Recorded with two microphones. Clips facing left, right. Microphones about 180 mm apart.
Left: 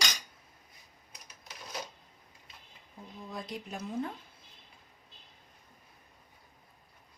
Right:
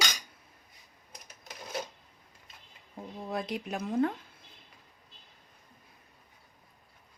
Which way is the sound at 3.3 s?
75° right (ahead or behind).